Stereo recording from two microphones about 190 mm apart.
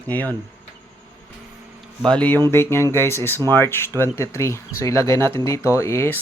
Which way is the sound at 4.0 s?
15° left (ahead or behind).